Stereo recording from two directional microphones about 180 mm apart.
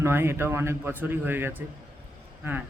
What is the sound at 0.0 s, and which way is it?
A man's voice, 15° right (ahead or behind).